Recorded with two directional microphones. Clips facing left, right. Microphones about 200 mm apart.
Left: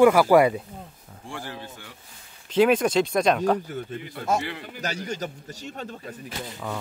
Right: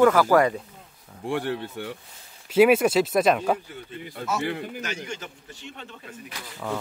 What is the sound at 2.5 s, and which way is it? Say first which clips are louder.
Speech: right 2 dB; 5° right (ahead or behind).